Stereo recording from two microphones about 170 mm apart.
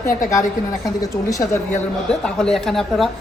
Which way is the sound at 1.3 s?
20° left (ahead or behind).